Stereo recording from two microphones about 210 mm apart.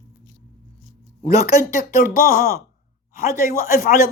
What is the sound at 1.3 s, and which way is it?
Speech, 15° right (ahead or behind).